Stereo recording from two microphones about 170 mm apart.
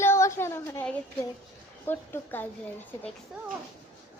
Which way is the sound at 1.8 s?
10° left (ahead or behind).